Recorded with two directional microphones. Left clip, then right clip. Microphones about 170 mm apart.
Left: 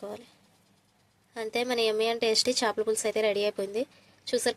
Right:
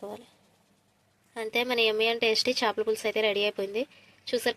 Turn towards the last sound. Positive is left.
turn(degrees=0)  # may be behind; listen again after turning